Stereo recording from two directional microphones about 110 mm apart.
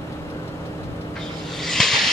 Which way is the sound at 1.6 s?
5° left (ahead or behind).